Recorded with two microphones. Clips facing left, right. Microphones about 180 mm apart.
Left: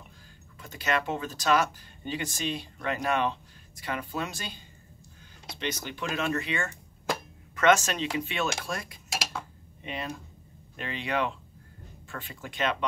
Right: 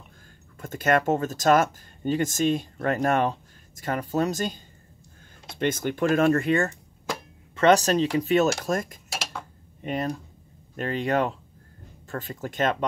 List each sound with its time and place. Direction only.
0.6 s speech: 50° right (ahead or behind)